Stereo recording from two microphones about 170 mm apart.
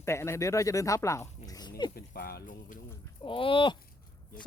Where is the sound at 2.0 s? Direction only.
65° left (ahead or behind).